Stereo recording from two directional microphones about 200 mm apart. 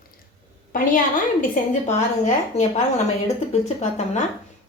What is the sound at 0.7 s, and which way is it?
Speech, 40° left (ahead or behind).